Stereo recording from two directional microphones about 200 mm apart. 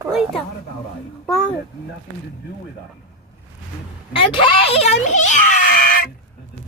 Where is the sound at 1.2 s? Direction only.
Centre (ahead or behind).